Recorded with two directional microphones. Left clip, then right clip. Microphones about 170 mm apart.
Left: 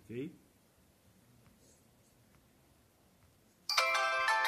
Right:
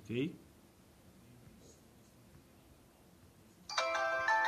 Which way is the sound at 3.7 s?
30° left (ahead or behind).